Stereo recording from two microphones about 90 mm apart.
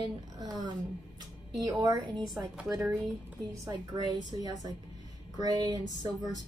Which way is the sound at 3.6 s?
50° right (ahead or behind).